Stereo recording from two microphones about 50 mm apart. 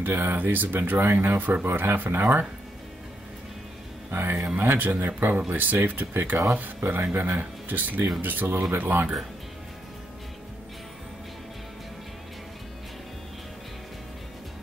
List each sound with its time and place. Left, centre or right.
0.0 s speech: right
4.1 s speech: right